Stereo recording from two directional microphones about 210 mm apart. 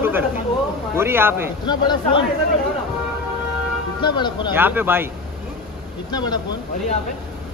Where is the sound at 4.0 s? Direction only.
20° left (ahead or behind).